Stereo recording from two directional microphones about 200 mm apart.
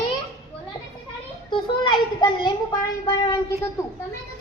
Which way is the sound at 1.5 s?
25° left (ahead or behind).